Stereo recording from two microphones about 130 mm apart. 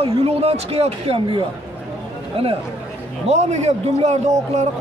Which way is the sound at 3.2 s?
60° right (ahead or behind).